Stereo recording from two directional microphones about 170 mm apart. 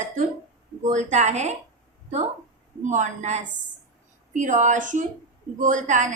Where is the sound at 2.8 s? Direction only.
45° right (ahead or behind).